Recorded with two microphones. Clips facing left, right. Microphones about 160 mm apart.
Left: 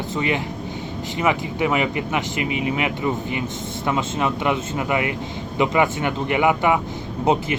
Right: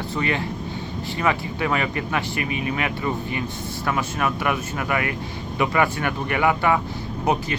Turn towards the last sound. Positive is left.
turn(degrees=20)  # may be behind; listen again after turning